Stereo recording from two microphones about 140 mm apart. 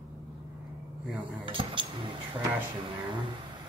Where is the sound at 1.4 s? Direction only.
35° right (ahead or behind).